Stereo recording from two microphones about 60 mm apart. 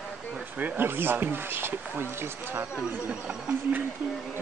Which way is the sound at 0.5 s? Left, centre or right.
Right.